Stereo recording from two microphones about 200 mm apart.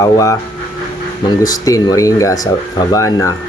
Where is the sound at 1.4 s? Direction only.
20° left (ahead or behind).